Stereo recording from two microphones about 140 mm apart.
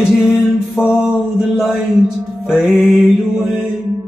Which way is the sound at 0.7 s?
5° right (ahead or behind).